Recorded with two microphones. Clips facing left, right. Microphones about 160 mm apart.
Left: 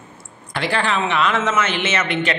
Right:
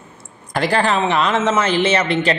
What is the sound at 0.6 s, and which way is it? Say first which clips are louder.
A man's voice: right 4 dB; 40° right (ahead or behind).